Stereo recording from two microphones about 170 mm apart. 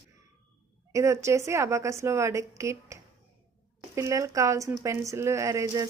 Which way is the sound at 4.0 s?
20° right (ahead or behind).